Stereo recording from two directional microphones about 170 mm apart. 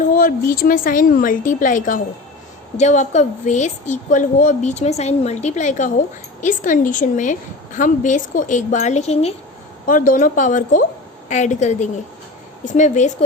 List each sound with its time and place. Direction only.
0.1 s a woman's voice: 55° left (ahead or behind)
9.8 s a woman's voice: 55° left (ahead or behind)